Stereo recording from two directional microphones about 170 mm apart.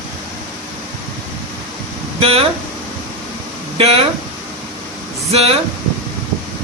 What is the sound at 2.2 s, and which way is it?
Speech, 35° right (ahead or behind).